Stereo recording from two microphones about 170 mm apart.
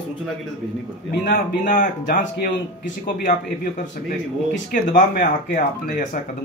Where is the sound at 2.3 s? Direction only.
80° left.